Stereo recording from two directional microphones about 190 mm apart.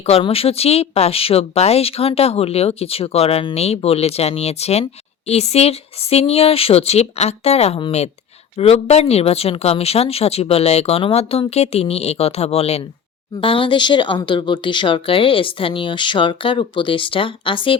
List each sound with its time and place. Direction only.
0.0 s a woman's voice: 30° left (ahead or behind)